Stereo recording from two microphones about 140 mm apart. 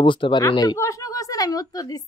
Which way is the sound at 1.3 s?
25° left (ahead or behind).